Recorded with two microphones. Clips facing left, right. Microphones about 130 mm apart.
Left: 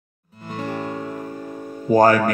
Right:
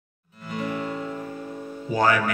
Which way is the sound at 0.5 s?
40° left (ahead or behind).